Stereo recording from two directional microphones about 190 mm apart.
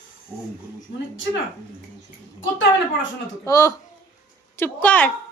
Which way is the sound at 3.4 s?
15° left (ahead or behind).